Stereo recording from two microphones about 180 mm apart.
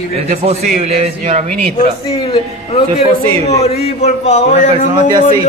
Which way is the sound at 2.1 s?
30° left (ahead or behind).